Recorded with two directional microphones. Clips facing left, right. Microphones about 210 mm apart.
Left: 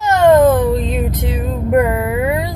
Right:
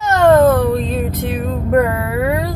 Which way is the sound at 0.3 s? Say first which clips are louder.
Even; 15° left (ahead or behind).